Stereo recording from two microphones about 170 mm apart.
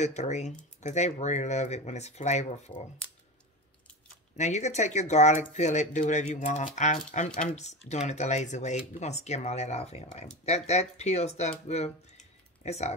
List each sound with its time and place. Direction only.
0.0 s speech: 40° left (ahead or behind)
4.4 s speech: 40° left (ahead or behind)